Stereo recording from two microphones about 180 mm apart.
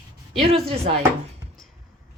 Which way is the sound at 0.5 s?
30° right (ahead or behind).